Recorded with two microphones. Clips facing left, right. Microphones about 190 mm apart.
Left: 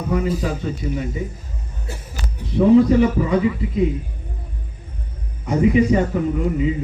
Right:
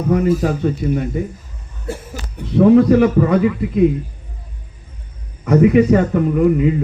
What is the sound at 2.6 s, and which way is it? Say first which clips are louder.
Speech: right 3 dB; 60° right (ahead or behind).